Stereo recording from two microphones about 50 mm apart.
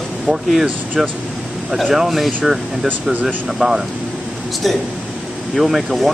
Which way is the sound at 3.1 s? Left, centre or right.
Right.